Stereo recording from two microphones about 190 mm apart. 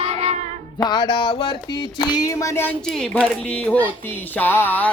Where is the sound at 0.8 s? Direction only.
20° left (ahead or behind).